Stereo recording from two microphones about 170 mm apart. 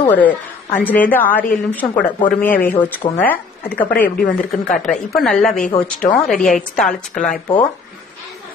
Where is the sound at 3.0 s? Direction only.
25° left (ahead or behind).